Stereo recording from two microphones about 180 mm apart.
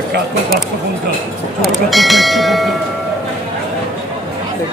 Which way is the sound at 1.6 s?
Centre (ahead or behind).